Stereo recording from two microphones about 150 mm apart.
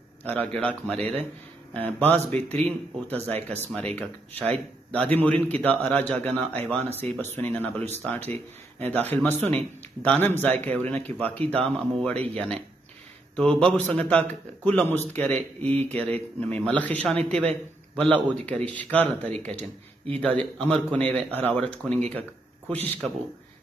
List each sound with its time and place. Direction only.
0.2 s a man's voice: 10° left (ahead or behind)
2.1 s speech: 45° right (ahead or behind)
2.6 s a man's voice: 10° left (ahead or behind)